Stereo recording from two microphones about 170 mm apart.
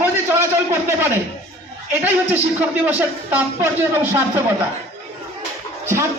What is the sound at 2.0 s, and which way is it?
Speech, 10° right (ahead or behind).